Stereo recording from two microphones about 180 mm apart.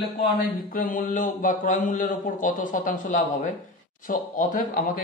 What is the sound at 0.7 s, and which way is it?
A man's voice, 50° left (ahead or behind).